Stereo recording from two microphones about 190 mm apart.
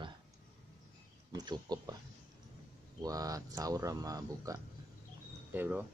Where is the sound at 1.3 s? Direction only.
20° right (ahead or behind).